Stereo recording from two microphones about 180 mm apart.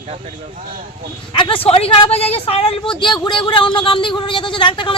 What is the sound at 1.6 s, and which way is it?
A woman's voice, 35° left (ahead or behind).